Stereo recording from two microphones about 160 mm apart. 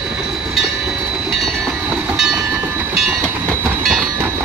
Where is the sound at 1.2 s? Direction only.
Centre (ahead or behind).